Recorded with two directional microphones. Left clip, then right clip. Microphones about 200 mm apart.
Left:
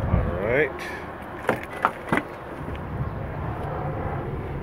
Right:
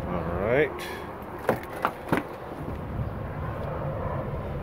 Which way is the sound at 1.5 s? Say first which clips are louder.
Left 3 dB; 20° right (ahead or behind).